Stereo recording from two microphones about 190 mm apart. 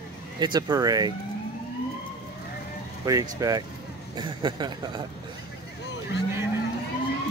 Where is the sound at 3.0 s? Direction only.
20° right (ahead or behind).